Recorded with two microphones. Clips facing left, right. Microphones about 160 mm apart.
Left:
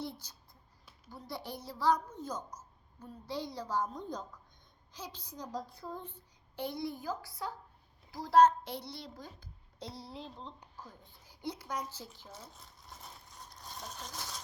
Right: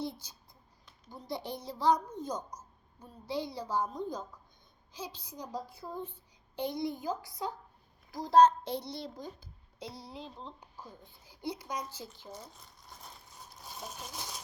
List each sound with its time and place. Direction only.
0.0 s a child's voice: 10° right (ahead or behind)
9.7 s a woman's voice: centre (ahead or behind)
12.3 s a sound: centre (ahead or behind)